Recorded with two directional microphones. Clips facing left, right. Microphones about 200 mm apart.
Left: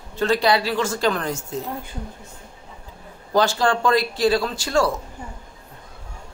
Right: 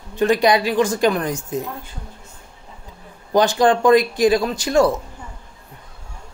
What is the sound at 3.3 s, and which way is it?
Speech, 20° right (ahead or behind).